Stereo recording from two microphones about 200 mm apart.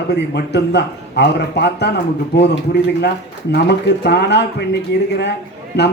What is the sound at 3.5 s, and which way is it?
Speech, 55° left (ahead or behind).